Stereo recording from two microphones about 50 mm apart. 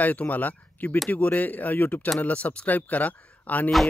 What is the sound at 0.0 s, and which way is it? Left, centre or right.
Speech, left.